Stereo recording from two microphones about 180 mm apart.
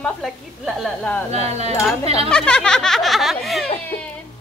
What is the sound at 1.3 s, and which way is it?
Speech, 35° right (ahead or behind).